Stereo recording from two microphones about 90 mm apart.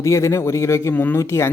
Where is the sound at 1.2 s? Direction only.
30° left (ahead or behind).